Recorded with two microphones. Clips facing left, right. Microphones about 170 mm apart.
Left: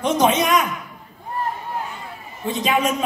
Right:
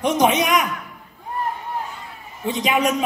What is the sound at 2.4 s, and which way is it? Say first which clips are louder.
Speech: even; 15° right (ahead or behind).